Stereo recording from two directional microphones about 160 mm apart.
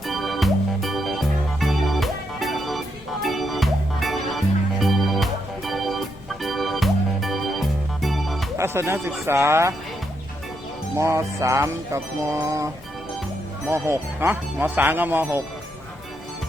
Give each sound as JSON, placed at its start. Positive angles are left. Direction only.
{"t": 0.1, "sound": "music", "side_deg": 0}
{"t": 8.5, "sound": "speech", "side_deg": -15}
{"t": 10.9, "sound": "music", "side_deg": -15}
{"t": 13.7, "sound": "speech", "side_deg": -15}